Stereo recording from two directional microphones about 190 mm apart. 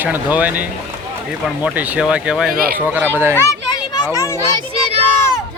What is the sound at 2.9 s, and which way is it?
Speech, 10° right (ahead or behind).